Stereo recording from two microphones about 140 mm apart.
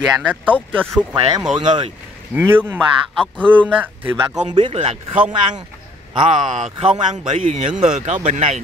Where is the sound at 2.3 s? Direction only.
15° right (ahead or behind).